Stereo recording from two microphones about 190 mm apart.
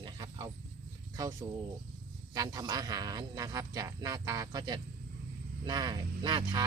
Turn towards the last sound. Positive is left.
turn(degrees=-25)  # may be behind; listen again after turning